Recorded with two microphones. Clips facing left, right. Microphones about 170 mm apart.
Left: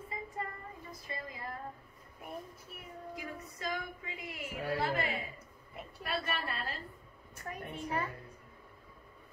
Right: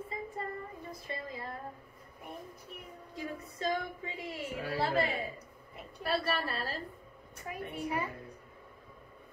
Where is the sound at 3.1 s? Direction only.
30° right (ahead or behind).